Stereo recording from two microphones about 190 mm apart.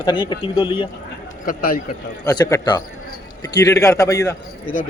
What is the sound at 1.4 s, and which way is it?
Speech, 45° left (ahead or behind).